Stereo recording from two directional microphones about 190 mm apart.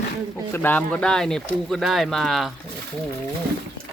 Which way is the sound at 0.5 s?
10° left (ahead or behind).